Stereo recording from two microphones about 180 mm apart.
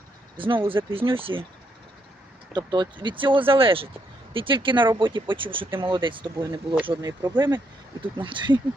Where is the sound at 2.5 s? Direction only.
25° right (ahead or behind).